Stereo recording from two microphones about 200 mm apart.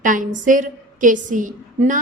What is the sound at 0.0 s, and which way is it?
A woman's voice, 40° right (ahead or behind).